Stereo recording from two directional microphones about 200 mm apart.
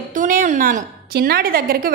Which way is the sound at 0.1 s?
40° right (ahead or behind).